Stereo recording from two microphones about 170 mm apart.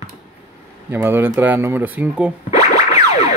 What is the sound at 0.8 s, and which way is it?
Speech, 10° right (ahead or behind).